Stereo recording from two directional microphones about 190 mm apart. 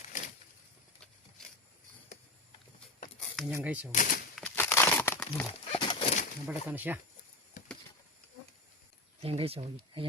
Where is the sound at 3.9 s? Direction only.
45° left (ahead or behind).